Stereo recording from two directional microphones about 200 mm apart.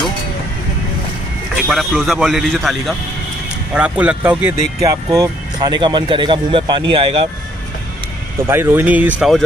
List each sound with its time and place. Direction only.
1.7 s a man's voice: centre (ahead or behind); by 7.2 s 25° right (ahead or behind)
8.5 s speech: 10° right (ahead or behind)